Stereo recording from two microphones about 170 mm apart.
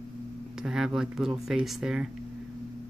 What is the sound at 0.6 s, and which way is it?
Speech, 5° right (ahead or behind).